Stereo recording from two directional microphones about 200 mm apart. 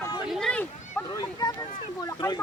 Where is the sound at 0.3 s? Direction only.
Centre (ahead or behind).